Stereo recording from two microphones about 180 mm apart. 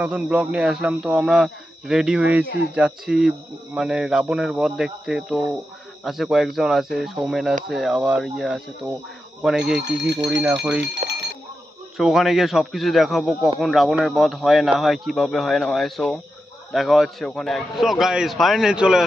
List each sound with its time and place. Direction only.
0.0 s speech: 5° right (ahead or behind)
10.0 s speech: 75° right (ahead or behind)
10.4 s speech: 5° right (ahead or behind)
11.0 s a sound: 50° right (ahead or behind)
12.0 s speech: centre (ahead or behind)